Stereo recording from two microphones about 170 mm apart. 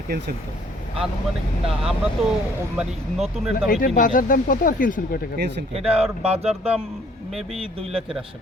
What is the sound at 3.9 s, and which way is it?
Speech, 50° left (ahead or behind).